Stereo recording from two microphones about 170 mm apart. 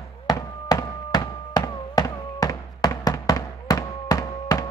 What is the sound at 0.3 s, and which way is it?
Fireworks, 20° left (ahead or behind).